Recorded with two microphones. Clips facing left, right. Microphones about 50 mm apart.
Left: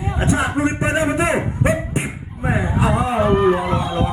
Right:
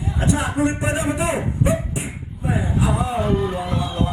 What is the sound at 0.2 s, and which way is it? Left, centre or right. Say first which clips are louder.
A man's voice: left 1 dB; left.